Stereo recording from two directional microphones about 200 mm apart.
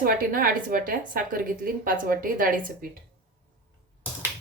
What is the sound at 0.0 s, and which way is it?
A woman's voice, 45° right (ahead or behind).